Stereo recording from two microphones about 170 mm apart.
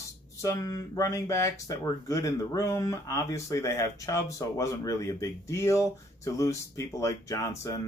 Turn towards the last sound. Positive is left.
turn(degrees=20)  # may be behind; listen again after turning